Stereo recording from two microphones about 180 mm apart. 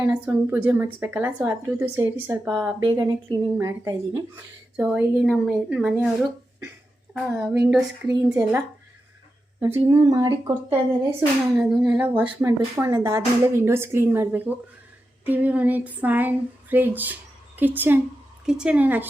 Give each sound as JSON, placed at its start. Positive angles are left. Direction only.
{"t": 0.0, "sound": "speech", "side_deg": -10}
{"t": 4.9, "sound": "a woman's voice", "side_deg": -5}
{"t": 7.1, "sound": "a woman's voice", "side_deg": -5}
{"t": 8.0, "sound": "speech", "side_deg": -15}
{"t": 9.8, "sound": "a sound", "side_deg": -20}
{"t": 11.5, "sound": "a woman's voice", "side_deg": -5}